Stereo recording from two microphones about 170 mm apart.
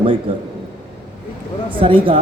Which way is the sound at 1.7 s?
30° right (ahead or behind).